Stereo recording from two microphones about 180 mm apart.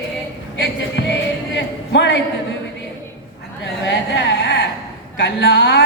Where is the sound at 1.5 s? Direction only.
85° left.